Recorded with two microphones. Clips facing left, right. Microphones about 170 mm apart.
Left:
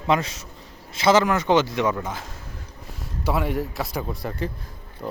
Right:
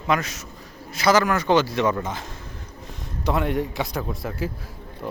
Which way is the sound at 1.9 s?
5° left (ahead or behind).